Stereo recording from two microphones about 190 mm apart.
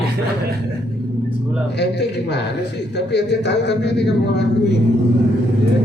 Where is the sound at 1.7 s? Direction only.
60° left (ahead or behind).